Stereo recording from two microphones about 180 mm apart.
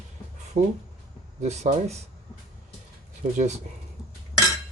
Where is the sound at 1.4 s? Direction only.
40° right (ahead or behind).